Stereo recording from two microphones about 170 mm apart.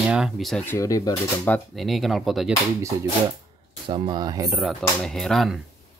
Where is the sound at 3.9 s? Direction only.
30° right (ahead or behind).